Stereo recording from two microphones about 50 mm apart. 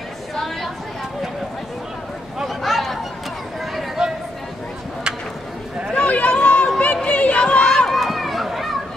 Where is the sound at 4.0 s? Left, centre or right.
Centre.